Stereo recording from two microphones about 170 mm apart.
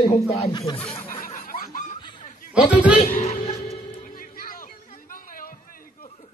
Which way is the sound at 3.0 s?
50° left (ahead or behind).